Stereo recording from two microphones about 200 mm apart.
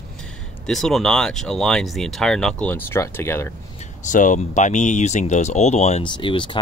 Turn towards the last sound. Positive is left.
turn(degrees=25)  # may be behind; listen again after turning